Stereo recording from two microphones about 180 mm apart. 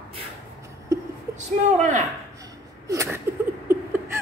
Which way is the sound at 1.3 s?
40° right (ahead or behind).